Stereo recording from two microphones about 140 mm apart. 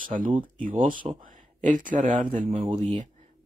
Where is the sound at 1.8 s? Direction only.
70° right (ahead or behind).